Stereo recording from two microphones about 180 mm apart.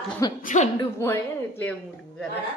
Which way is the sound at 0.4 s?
40° left (ahead or behind).